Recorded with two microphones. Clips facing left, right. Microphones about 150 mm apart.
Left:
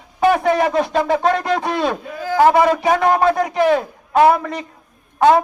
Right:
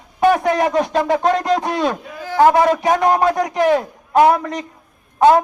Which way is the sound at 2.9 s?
20° right (ahead or behind).